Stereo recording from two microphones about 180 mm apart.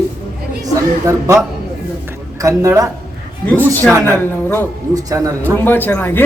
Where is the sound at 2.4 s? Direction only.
15° right (ahead or behind).